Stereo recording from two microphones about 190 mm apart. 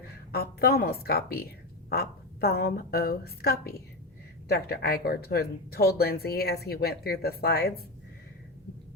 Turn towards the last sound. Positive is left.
turn(degrees=55)  # may be behind; listen again after turning